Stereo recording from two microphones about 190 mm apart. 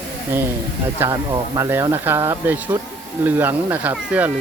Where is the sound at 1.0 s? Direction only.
15° right (ahead or behind).